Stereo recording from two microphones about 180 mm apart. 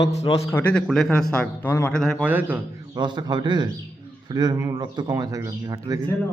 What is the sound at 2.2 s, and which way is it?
A man's voice, 10° right (ahead or behind).